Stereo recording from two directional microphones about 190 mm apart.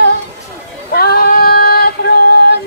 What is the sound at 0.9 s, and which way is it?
Female singing, 55° left (ahead or behind).